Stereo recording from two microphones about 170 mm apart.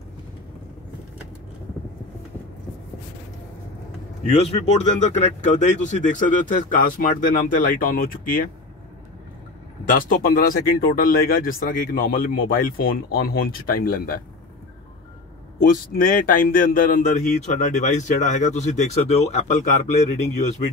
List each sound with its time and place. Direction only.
4.4 s speech: 40° left (ahead or behind)
5.7 s speech: 45° left (ahead or behind)
9.8 s speech: 50° left (ahead or behind)
15.6 s speech: 55° left (ahead or behind)